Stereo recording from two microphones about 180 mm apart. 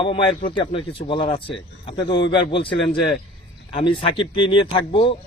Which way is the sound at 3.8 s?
30° left (ahead or behind).